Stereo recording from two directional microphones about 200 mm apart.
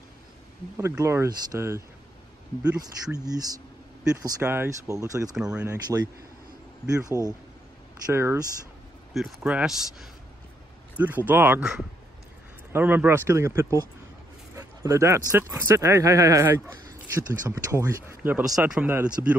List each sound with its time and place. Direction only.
0.7 s speech: 15° right (ahead or behind)
3.2 s speech: 20° right (ahead or behind)
5.3 s speech: 5° right (ahead or behind)
5.7 s speech: 20° right (ahead or behind)
7.1 s speech: 15° right (ahead or behind)